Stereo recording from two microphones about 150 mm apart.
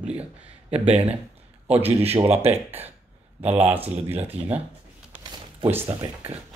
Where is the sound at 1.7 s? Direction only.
45° right (ahead or behind).